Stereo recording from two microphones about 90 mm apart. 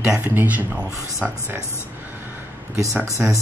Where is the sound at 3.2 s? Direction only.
10° right (ahead or behind).